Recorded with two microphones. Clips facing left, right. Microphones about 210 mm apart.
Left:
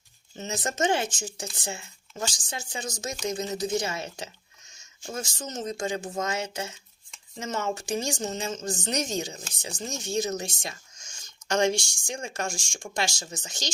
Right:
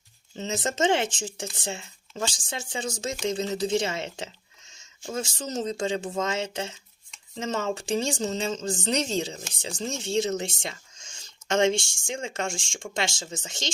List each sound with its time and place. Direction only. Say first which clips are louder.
0.3 s speech: right 2 dB; 25° right (ahead or behind)